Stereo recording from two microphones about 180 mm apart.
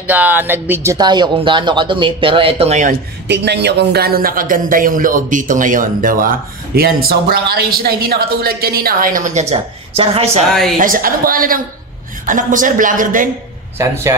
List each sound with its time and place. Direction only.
0.0 s speech: 10° right (ahead or behind)
0.9 s speech: 25° right (ahead or behind)
3.3 s a man's voice: 70° right (ahead or behind); by 10.4 s 35° right (ahead or behind)
10.8 s a man's voice: 50° right (ahead or behind)
13.7 s speech: 15° right (ahead or behind)